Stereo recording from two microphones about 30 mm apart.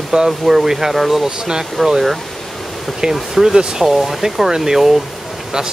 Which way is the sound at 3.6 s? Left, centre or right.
Right.